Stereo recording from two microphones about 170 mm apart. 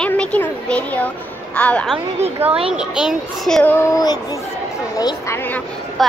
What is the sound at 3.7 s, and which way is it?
Speech, 20° left (ahead or behind).